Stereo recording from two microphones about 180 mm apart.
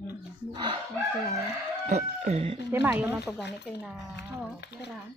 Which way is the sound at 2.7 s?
10° right (ahead or behind).